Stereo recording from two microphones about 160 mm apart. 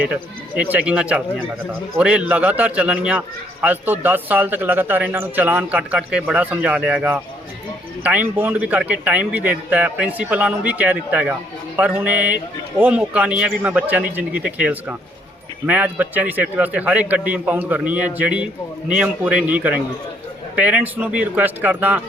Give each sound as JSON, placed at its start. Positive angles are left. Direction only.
{"t": 0.0, "sound": "a man's voice", "side_deg": -10}